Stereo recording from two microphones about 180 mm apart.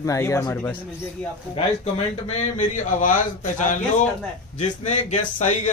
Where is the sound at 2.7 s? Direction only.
45° left (ahead or behind).